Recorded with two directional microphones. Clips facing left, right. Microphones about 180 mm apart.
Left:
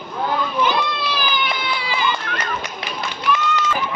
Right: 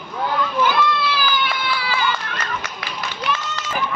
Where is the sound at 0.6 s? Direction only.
20° left (ahead or behind).